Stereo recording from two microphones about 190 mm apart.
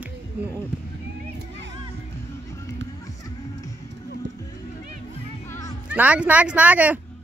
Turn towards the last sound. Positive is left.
turn(degrees=-10)  # may be behind; listen again after turning